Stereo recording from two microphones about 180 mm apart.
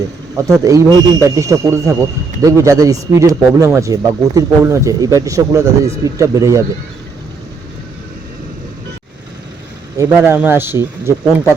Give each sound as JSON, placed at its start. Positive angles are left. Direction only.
{"t": 0.6, "sound": "speech", "side_deg": -20}
{"t": 10.0, "sound": "speech", "side_deg": -10}